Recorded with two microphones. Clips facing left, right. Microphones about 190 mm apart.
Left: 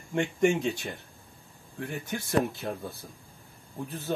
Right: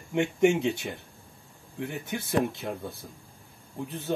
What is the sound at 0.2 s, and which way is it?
Speech, 5° right (ahead or behind).